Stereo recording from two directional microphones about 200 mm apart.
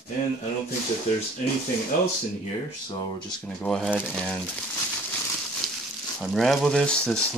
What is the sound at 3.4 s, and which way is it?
Speech, 5° left (ahead or behind).